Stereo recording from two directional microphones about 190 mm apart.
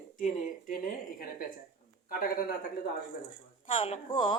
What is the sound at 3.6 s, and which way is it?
Speech, 30° left (ahead or behind).